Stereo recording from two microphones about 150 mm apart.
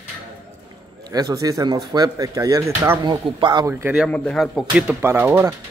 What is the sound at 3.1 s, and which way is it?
Speech, 30° right (ahead or behind).